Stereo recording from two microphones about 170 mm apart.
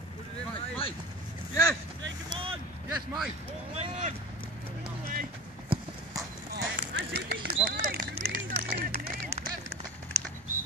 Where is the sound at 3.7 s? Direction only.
40° right (ahead or behind).